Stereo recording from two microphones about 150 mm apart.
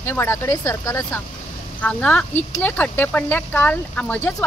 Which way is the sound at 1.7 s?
10° left (ahead or behind).